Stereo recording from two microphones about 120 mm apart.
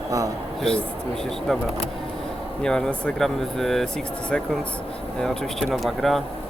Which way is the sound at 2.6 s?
5° left (ahead or behind).